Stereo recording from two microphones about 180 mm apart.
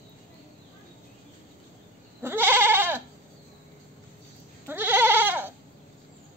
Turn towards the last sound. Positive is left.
turn(degrees=-10)  # may be behind; listen again after turning